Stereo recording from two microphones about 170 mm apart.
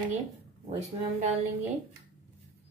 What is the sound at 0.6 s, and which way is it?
Speech, 40° right (ahead or behind).